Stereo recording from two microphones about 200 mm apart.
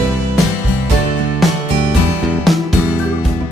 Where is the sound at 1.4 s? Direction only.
Centre (ahead or behind).